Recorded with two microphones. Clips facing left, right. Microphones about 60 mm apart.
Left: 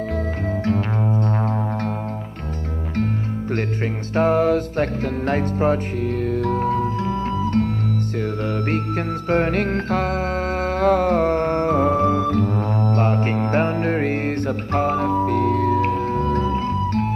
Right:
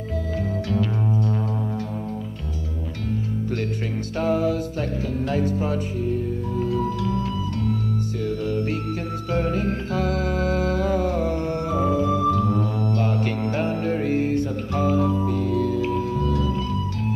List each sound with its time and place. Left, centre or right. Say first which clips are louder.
3.0 s music: left 4 dB; left
6.0 s music: left 8 dB; left
6.6 s music: left 3 dB; left